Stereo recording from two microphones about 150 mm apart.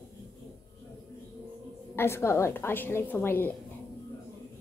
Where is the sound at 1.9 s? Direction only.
15° left (ahead or behind).